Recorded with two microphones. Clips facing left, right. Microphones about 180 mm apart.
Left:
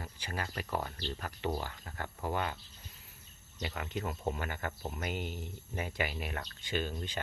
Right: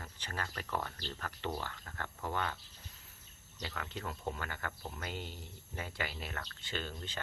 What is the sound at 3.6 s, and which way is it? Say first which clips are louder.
Speech: left 4 dB; 20° left (ahead or behind).